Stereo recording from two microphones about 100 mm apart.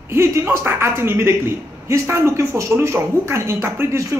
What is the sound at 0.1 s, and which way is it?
A man's voice, 30° right (ahead or behind).